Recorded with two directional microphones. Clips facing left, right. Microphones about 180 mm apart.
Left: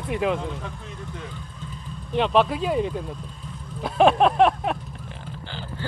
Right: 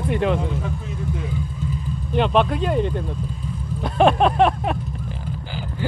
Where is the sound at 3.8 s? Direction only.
Centre (ahead or behind).